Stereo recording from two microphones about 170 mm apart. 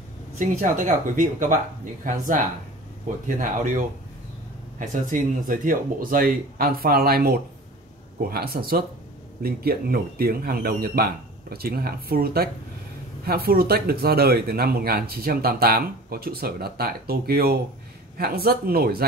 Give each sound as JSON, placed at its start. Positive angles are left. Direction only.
{"t": 0.4, "sound": "speech", "side_deg": -50}
{"t": 3.3, "sound": "speech", "side_deg": -50}